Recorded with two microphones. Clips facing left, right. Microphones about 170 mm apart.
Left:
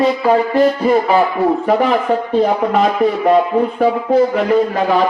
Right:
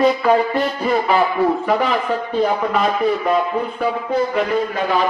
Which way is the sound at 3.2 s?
35° left (ahead or behind).